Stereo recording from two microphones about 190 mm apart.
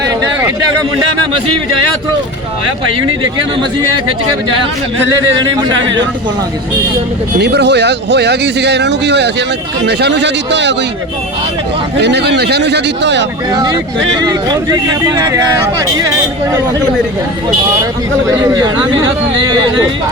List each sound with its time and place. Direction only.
0.1 s a sound: 20° right (ahead or behind)
5.5 s speech: 25° right (ahead or behind)
7.3 s speech: 60° right (ahead or behind)
11.9 s speech: 65° right (ahead or behind)
13.5 s speech: 20° right (ahead or behind)
18.3 s speech: 20° right (ahead or behind)